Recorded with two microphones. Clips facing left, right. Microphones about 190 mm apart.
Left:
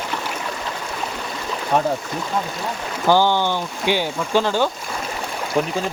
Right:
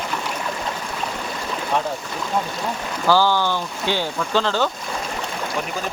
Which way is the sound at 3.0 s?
20° left (ahead or behind).